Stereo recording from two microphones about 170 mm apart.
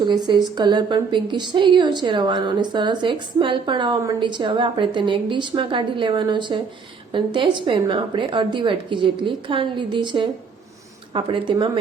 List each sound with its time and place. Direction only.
0.0 s a woman's voice: 25° right (ahead or behind)